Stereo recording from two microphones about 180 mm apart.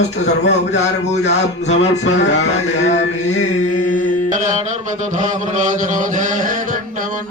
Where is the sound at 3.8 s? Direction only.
45° left (ahead or behind).